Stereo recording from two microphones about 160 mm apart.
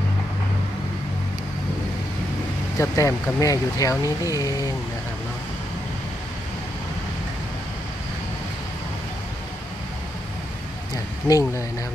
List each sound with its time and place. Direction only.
2.8 s speech: 20° left (ahead or behind)
11.2 s speech: 20° left (ahead or behind)